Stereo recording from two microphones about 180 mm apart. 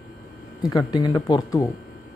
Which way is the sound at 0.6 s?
20° left (ahead or behind).